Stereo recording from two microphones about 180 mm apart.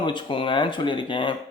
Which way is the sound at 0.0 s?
25° left (ahead or behind).